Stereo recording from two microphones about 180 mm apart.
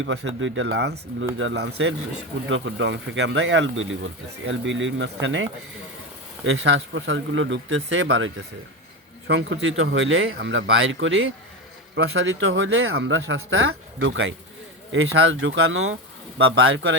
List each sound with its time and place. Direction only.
0.0 s speech: 90° right
9.2 s speech: 70° right (ahead or behind); by 17.0 s 90° right